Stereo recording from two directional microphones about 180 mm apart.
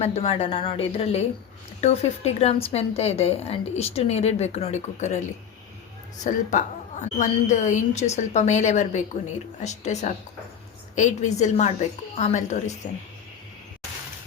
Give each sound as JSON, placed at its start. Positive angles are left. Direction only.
{"t": 0.0, "sound": "a woman's voice", "side_deg": 35}
{"t": 6.2, "sound": "a woman's voice", "side_deg": 45}